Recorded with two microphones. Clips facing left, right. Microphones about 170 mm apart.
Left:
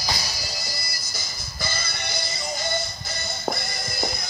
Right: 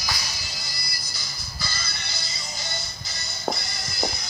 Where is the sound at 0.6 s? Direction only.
45° left (ahead or behind).